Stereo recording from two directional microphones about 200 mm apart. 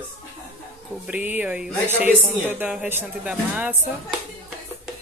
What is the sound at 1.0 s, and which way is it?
Speech, 5° right (ahead or behind).